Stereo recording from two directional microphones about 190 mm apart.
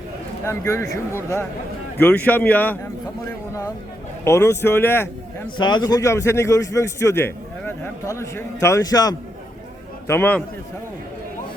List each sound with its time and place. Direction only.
0.4 s a man's voice: 15° left (ahead or behind)
4.2 s a man's voice: 15° left (ahead or behind)
5.5 s a man's voice: 25° left (ahead or behind)